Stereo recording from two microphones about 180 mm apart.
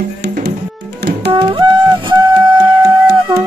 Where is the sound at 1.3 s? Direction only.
25° right (ahead or behind).